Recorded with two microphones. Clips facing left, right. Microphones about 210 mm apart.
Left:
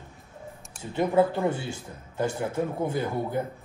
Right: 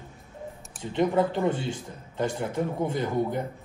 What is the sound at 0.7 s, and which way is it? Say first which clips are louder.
Speech: even; 10° left (ahead or behind).